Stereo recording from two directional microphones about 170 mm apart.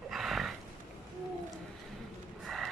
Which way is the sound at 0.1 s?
Centre (ahead or behind).